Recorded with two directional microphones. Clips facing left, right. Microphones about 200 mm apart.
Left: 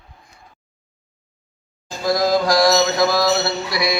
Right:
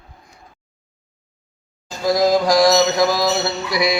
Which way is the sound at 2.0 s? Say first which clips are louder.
Right 2 dB; 15° right (ahead or behind).